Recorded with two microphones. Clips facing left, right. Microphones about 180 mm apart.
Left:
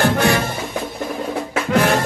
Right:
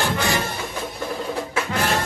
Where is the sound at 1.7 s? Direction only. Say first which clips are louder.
Left 10 dB; 65° left (ahead or behind).